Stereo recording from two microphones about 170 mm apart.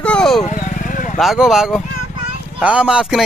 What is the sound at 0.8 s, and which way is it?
Vehicle, 50° left (ahead or behind).